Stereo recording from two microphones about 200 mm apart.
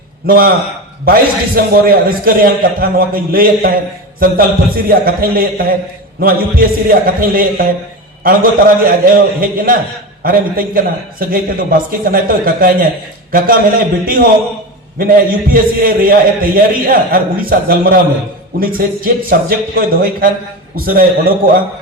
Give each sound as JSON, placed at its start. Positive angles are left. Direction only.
{"t": 0.3, "sound": "a man's voice", "side_deg": -45}
{"t": 4.9, "sound": "a man's voice", "side_deg": -50}